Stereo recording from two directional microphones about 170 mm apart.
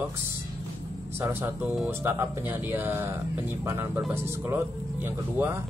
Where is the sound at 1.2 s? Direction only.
15° right (ahead or behind).